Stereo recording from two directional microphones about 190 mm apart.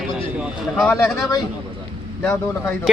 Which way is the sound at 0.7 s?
10° left (ahead or behind).